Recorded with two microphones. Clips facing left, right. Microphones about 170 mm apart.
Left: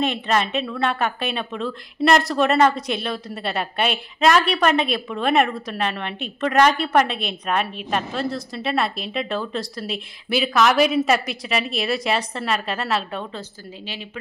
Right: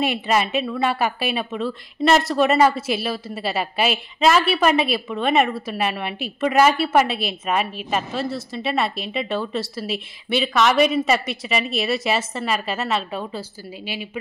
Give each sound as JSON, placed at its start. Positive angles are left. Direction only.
{"t": 0.0, "sound": "a woman's voice", "side_deg": -10}